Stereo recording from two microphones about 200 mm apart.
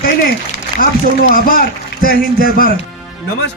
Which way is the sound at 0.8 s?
45° left (ahead or behind).